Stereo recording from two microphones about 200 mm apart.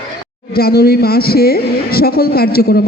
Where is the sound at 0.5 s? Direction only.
50° left (ahead or behind).